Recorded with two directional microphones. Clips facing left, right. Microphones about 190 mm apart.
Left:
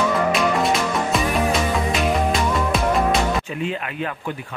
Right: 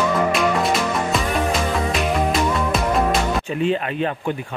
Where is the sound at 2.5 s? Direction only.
Centre (ahead or behind).